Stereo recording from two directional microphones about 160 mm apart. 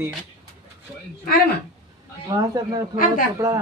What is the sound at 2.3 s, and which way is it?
Speech, 20° right (ahead or behind).